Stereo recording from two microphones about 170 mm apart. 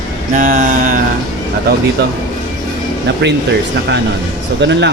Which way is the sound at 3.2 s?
90° right.